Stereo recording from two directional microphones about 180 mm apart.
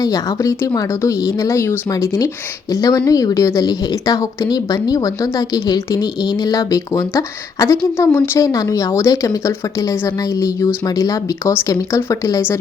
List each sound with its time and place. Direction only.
0.0 s a woman's voice: 20° left (ahead or behind)